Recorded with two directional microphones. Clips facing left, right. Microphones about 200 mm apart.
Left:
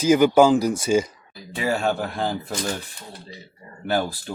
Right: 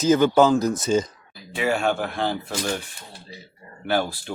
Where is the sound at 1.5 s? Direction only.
35° left (ahead or behind).